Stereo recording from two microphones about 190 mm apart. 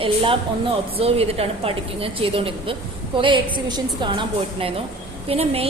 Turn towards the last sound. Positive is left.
turn(degrees=-30)  # may be behind; listen again after turning